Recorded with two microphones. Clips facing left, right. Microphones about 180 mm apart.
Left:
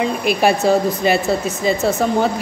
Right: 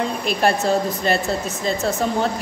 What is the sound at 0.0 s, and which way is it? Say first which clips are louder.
Speech: left 4 dB; 5° left (ahead or behind).